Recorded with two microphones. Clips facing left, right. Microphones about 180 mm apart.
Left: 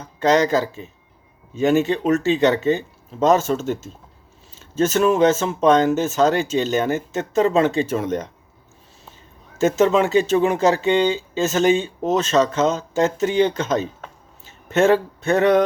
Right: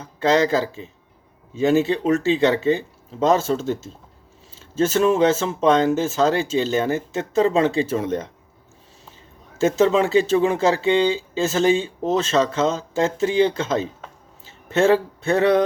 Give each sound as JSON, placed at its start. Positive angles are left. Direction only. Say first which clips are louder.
{"t": 0.0, "sound": "speech", "louder": "left 1 dB", "side_deg": -30}
{"t": 9.6, "sound": "speech", "louder": "left 1 dB", "side_deg": -30}